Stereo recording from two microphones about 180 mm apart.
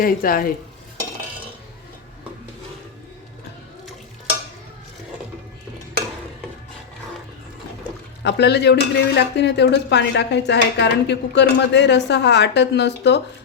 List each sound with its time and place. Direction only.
0.0 s speech: 55° left (ahead or behind)
8.2 s speech: 70° left (ahead or behind)